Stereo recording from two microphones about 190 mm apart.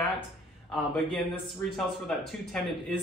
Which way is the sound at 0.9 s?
Centre (ahead or behind).